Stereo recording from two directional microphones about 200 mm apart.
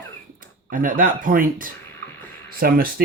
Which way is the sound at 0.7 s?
45° right (ahead or behind).